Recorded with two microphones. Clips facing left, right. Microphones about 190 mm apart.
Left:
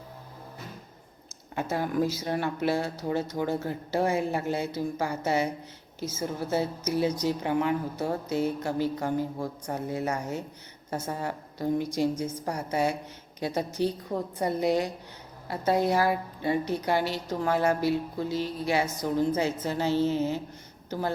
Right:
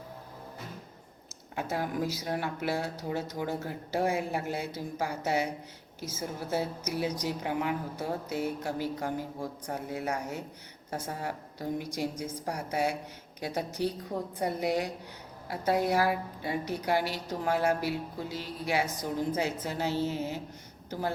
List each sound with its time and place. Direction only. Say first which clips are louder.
1.7 s speech: left 5 dB; 10° right (ahead or behind)
11.8 s speech: left 6 dB; 15° right (ahead or behind)